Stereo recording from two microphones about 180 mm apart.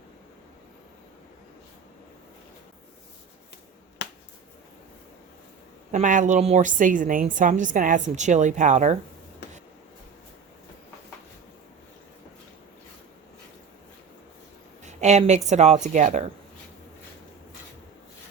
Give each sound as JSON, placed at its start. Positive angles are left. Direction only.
{"t": 4.0, "sound": "finger snapping", "side_deg": 70}
{"t": 5.9, "sound": "a woman's voice", "side_deg": -45}
{"t": 14.8, "sound": "a sound", "side_deg": -40}
{"t": 15.4, "sound": "speech", "side_deg": -40}